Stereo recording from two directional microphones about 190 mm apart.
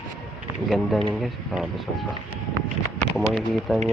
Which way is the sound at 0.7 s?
Centre (ahead or behind).